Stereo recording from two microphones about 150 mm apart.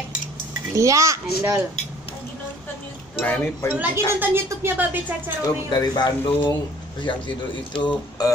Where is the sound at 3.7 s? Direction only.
10° right (ahead or behind).